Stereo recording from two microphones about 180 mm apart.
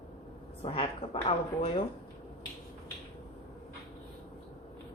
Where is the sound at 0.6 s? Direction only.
30° left (ahead or behind).